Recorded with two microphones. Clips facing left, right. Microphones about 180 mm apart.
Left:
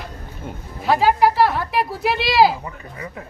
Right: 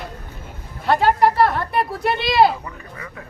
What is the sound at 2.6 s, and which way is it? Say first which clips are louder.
Speech: left 2 dB; 25° left (ahead or behind).